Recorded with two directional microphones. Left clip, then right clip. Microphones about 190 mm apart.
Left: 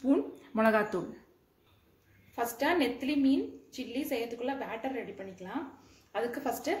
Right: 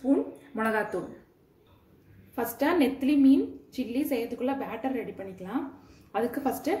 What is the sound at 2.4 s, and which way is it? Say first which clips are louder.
A woman's voice: right 3 dB; 40° right (ahead or behind).